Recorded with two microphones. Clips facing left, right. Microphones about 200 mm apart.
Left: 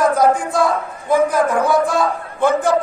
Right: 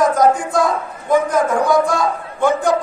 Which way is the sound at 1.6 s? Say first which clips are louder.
Right 1 dB; 15° right (ahead or behind).